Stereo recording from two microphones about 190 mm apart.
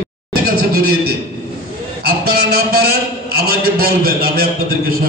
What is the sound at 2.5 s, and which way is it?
A man's voice, 55° right (ahead or behind).